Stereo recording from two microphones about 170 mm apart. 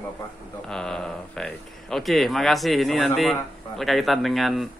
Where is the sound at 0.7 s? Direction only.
5° left (ahead or behind).